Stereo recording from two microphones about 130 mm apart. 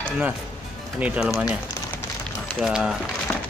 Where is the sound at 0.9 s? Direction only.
10° right (ahead or behind).